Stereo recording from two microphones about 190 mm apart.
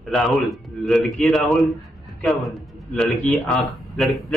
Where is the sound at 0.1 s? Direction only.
Centre (ahead or behind).